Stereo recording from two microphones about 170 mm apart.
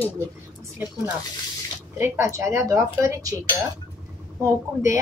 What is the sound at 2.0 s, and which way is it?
A woman's voice, 15° right (ahead or behind).